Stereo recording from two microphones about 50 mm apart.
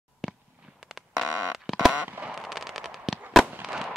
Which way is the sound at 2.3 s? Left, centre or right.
Centre.